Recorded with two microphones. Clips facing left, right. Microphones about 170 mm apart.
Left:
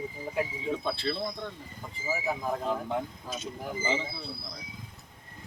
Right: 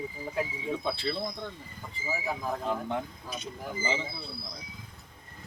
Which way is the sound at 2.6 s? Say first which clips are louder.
Left 1 dB; centre (ahead or behind).